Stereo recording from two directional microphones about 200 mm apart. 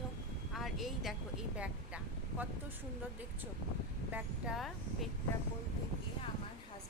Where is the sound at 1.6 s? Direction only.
5° right (ahead or behind).